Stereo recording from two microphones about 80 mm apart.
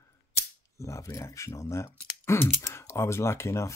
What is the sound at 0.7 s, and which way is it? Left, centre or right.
Speech, left.